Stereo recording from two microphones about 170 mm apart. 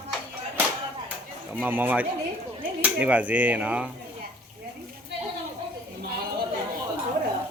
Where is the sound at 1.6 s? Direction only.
10° right (ahead or behind).